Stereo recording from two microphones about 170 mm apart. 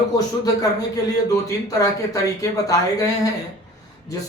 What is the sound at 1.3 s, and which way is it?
Speech, 20° left (ahead or behind).